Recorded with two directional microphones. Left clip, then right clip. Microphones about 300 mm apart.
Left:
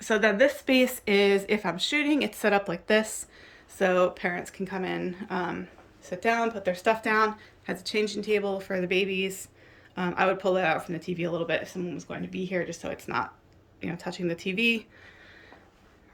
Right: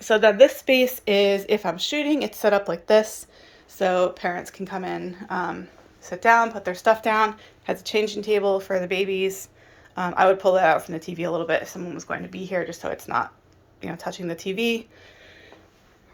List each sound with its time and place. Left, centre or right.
0.6 s speech: centre
11.9 s speech: centre
12.3 s speech: centre